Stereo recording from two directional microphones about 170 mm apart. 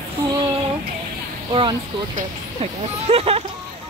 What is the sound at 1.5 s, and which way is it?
Speech, 30° right (ahead or behind).